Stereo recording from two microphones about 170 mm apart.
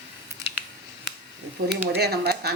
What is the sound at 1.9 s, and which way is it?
Speech, 70° right (ahead or behind).